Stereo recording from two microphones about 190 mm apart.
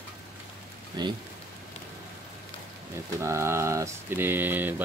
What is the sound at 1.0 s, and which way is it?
Speech, 20° right (ahead or behind).